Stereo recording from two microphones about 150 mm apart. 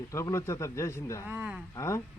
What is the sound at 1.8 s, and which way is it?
Speech, 20° left (ahead or behind).